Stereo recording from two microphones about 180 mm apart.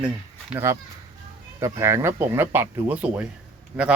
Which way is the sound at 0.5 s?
15° right (ahead or behind).